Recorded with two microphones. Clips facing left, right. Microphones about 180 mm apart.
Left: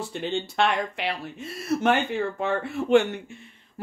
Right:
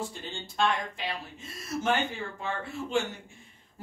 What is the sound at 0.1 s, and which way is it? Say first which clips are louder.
Speech: left 12 dB; 70° left (ahead or behind).